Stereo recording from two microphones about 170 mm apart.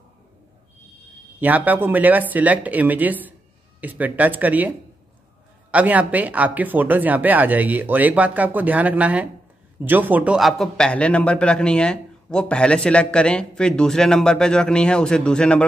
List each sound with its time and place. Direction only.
1.4 s a man's voice: 10° right (ahead or behind)